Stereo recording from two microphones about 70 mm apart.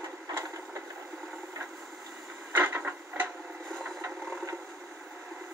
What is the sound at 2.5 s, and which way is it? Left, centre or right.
Printer, right.